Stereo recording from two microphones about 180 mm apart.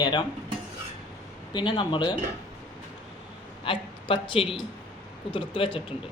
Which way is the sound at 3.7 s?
30° left (ahead or behind).